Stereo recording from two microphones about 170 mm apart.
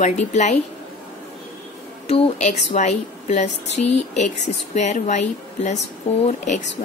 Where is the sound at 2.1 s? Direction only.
40° left (ahead or behind).